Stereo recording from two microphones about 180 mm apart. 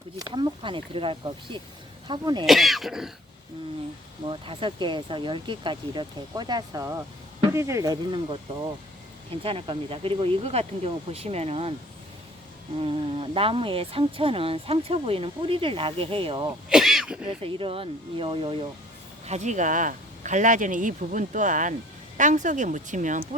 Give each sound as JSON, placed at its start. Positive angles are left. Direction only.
{"t": 0.2, "sound": "speech", "side_deg": -25}
{"t": 2.5, "sound": "speech", "side_deg": 0}
{"t": 4.3, "sound": "speech", "side_deg": -30}
{"t": 9.4, "sound": "speech", "side_deg": -30}
{"t": 12.8, "sound": "speech", "side_deg": -30}
{"t": 16.6, "sound": "throat clearing", "side_deg": 0}
{"t": 17.2, "sound": "speech", "side_deg": -30}
{"t": 19.2, "sound": "speech", "side_deg": -40}